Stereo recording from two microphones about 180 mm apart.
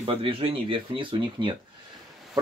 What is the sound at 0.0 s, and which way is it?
Speech, 30° right (ahead or behind).